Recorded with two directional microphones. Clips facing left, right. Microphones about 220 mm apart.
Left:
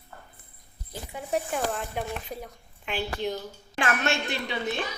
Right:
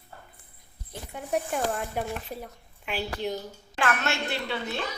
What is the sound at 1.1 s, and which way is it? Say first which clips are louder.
Speech: even; centre (ahead or behind).